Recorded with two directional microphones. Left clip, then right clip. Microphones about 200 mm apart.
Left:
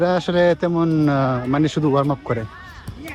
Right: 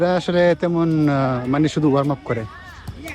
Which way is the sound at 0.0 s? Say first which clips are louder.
Even; 15° left (ahead or behind).